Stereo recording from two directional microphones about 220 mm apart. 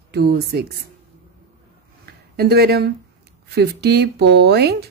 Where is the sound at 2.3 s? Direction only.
45° right (ahead or behind).